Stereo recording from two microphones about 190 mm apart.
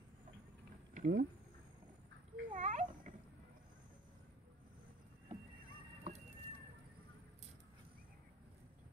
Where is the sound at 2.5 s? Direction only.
40° right (ahead or behind).